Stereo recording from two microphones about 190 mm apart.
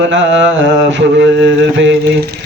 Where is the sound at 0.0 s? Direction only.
75° right (ahead or behind).